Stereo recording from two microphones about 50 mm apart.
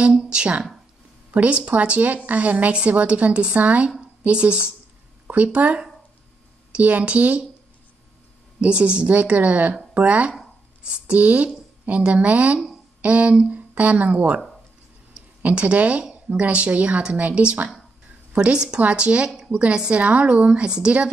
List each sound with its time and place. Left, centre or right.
0.3 s a woman's voice: right
6.8 s a woman's voice: right
8.5 s a woman's voice: right
15.4 s a woman's voice: right